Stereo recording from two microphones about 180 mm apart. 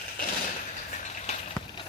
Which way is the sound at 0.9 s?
40° left (ahead or behind).